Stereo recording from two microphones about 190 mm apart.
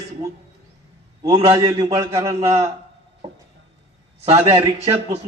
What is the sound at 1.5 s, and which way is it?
Speech, 20° right (ahead or behind).